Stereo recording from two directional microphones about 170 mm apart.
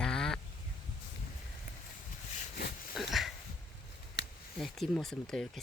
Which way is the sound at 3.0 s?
Centre (ahead or behind).